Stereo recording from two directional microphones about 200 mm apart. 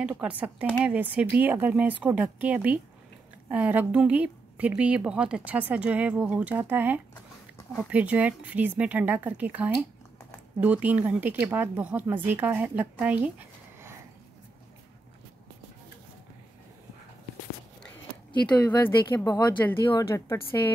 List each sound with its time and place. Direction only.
0.0 s a woman's voice: 5° right (ahead or behind)
18.6 s speech: 10° left (ahead or behind)